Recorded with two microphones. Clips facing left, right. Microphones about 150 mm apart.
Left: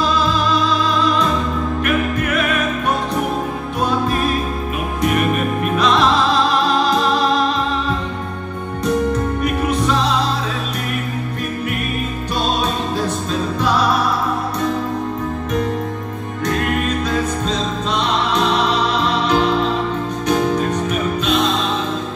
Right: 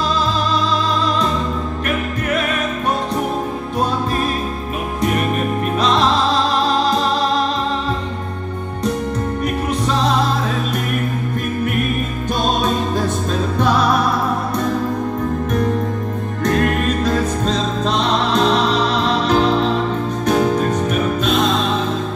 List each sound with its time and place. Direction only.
5.0 s music: 35° right (ahead or behind)
16.4 s music: 45° right (ahead or behind)